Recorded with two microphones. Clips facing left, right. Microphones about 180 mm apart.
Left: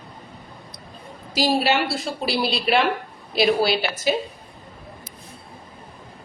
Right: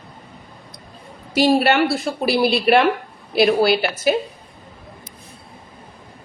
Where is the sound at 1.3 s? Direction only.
60° right (ahead or behind).